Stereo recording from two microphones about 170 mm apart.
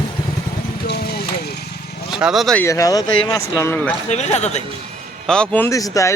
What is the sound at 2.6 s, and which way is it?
Speech, 20° left (ahead or behind).